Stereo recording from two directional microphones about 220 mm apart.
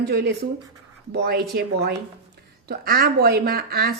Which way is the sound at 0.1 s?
45° right (ahead or behind).